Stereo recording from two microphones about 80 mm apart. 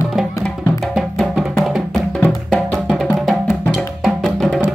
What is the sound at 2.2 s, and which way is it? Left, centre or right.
Music, centre.